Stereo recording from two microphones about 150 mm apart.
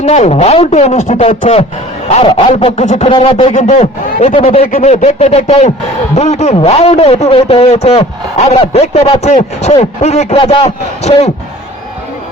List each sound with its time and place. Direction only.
0.0 s a man's voice: 50° left (ahead or behind)
2.2 s a man's voice: 40° left (ahead or behind)
4.6 s speech: 70° left (ahead or behind)
4.9 s a man's voice: 45° left (ahead or behind)